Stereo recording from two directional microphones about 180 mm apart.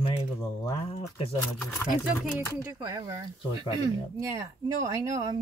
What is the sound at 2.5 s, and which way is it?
Speech, 20° right (ahead or behind).